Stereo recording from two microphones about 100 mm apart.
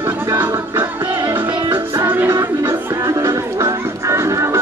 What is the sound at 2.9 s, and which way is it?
Music, 35° right (ahead or behind).